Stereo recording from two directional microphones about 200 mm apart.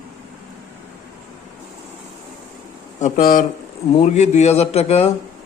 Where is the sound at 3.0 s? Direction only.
40° left (ahead or behind).